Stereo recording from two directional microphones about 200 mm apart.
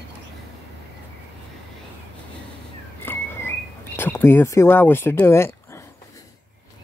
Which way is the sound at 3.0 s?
10° left (ahead or behind).